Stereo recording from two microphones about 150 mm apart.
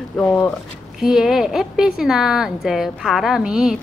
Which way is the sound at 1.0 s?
5° right (ahead or behind).